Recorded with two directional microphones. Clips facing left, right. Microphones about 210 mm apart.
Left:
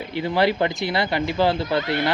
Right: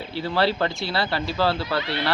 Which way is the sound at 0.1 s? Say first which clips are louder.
Left 2 dB; 15° left (ahead or behind).